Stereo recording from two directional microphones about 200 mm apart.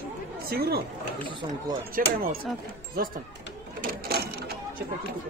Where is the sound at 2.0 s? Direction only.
45° right (ahead or behind).